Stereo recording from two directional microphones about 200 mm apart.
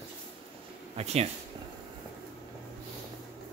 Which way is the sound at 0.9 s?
30° right (ahead or behind).